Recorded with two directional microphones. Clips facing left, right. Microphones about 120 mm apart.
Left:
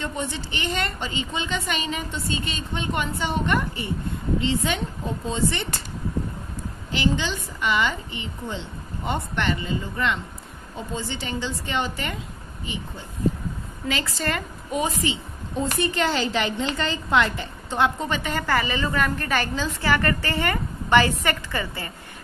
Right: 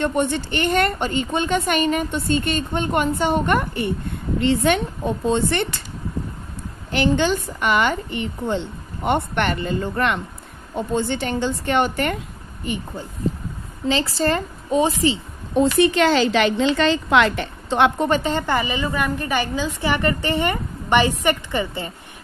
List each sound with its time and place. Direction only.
0.0 s a woman's voice: 60° right (ahead or behind)
6.9 s a woman's voice: 55° right (ahead or behind)
13.8 s a woman's voice: 30° right (ahead or behind)
15.5 s a woman's voice: 85° right; by 18.2 s 60° right (ahead or behind)
18.2 s a woman's voice: 25° right (ahead or behind)